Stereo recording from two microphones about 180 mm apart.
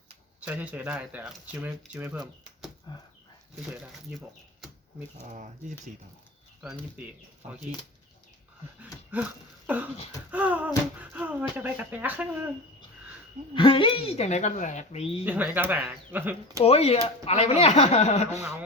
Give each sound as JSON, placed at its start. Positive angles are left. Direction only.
{"t": 0.3, "sound": "speech", "side_deg": -10}
{"t": 2.9, "sound": "dog", "side_deg": 25}
{"t": 5.3, "sound": "speech", "side_deg": -45}
{"t": 9.6, "sound": "speech", "side_deg": -10}
{"t": 13.5, "sound": "speech", "side_deg": 30}
{"t": 15.2, "sound": "speech", "side_deg": -10}
{"t": 16.6, "sound": "speech", "side_deg": 35}